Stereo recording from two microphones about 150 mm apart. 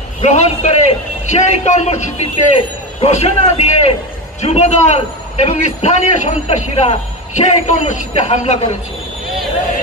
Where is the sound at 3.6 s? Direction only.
45° left (ahead or behind).